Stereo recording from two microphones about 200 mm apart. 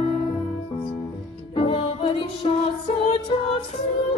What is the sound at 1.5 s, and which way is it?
Music, 25° left (ahead or behind).